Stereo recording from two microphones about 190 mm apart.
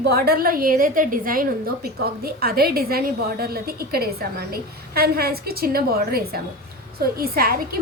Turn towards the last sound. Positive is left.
turn(degrees=-50)  # may be behind; listen again after turning